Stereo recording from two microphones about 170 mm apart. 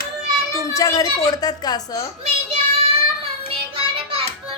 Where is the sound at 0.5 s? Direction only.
20° left (ahead or behind).